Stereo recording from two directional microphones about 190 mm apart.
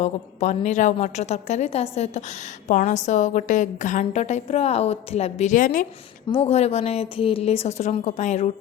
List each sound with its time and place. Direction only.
0.0 s a woman's voice: 40° left (ahead or behind)
6.3 s a woman's voice: 30° left (ahead or behind)